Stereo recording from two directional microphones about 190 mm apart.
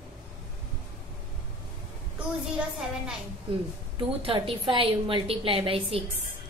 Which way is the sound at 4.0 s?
30° right (ahead or behind).